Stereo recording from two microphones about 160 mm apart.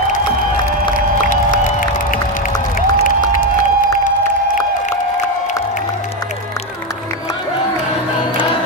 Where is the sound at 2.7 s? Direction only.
55° left (ahead or behind).